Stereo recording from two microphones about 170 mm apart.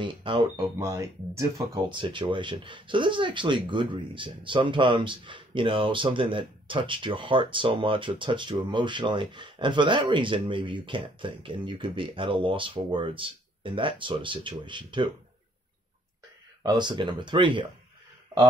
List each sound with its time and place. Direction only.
0.0 s speech: 30° right (ahead or behind)
1.9 s speech: 30° right (ahead or behind)
16.6 s speech: 25° right (ahead or behind)